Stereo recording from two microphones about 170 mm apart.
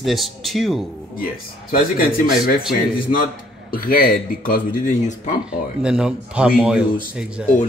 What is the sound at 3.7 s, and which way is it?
A man's voice, 60° left (ahead or behind).